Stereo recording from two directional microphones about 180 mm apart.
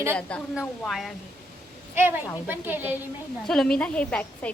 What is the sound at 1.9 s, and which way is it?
A woman's voice, 10° right (ahead or behind).